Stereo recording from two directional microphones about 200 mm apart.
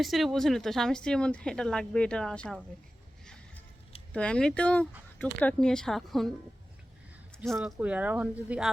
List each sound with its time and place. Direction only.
0.0 s a woman's voice: centre (ahead or behind)
4.1 s a woman's voice: 5° left (ahead or behind)
7.4 s speech: centre (ahead or behind)